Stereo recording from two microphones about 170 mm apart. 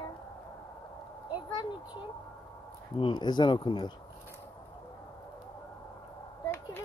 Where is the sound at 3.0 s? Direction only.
30° left (ahead or behind).